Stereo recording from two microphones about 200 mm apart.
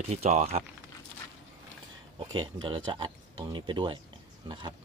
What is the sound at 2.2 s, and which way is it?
Speech, 20° right (ahead or behind).